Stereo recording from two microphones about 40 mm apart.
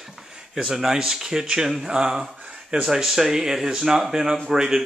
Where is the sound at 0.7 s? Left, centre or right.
Centre.